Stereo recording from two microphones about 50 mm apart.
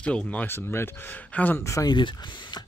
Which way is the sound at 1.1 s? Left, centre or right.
Left.